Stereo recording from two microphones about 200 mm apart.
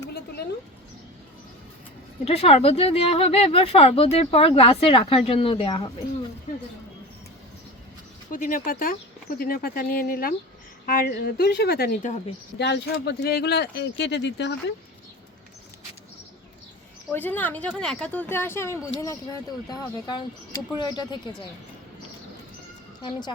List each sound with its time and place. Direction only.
2.2 s a woman's voice: 30° left (ahead or behind)
8.3 s speech: 40° left (ahead or behind)
12.5 s speech: 60° left (ahead or behind)
17.2 s a woman's voice: 10° left (ahead or behind)
23.0 s a woman's voice: 20° left (ahead or behind)